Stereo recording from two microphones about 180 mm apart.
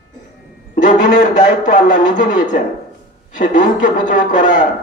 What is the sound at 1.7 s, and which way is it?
A man's voice, 45° left (ahead or behind).